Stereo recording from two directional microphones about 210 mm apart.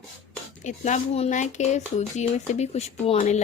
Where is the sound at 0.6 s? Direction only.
35° left (ahead or behind).